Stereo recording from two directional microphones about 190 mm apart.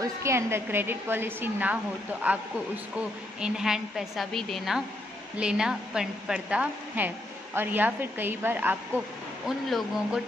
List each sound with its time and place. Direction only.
0.0 s a woman's voice: 15° right (ahead or behind)
3.3 s a woman's voice: 5° right (ahead or behind)